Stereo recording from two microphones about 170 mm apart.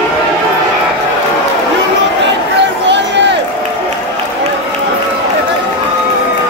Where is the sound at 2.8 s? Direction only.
90° right.